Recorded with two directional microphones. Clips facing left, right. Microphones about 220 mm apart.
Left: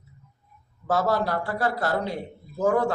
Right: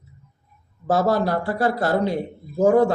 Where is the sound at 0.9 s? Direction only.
35° right (ahead or behind).